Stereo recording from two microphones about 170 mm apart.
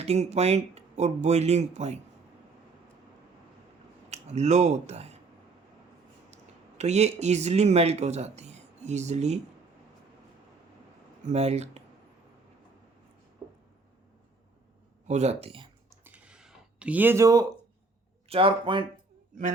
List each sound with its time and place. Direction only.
0.0 s speech: 40° right (ahead or behind)
4.1 s speech: 40° right (ahead or behind)
6.3 s speech: 40° right (ahead or behind)
11.3 s speech: 40° right (ahead or behind)
13.4 s a sound: 25° right (ahead or behind)
15.0 s speech: 40° right (ahead or behind)
16.0 s a sound: 5° right (ahead or behind)
18.3 s speech: 30° right (ahead or behind)